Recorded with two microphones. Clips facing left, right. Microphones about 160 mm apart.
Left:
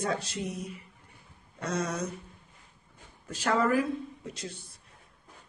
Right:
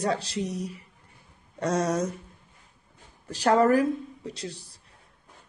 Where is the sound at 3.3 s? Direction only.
40° right (ahead or behind).